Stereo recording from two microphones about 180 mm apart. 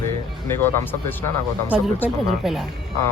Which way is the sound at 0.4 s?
15° left (ahead or behind).